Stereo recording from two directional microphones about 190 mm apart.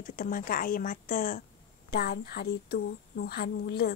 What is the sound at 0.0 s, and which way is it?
A woman's voice, 50° left (ahead or behind).